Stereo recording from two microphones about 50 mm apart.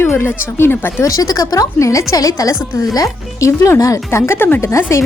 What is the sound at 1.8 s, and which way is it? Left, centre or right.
A woman's voice, left.